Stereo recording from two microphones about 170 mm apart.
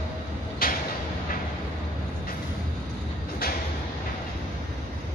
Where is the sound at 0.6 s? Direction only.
60° left (ahead or behind).